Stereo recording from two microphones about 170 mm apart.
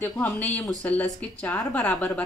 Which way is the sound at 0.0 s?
10° left (ahead or behind).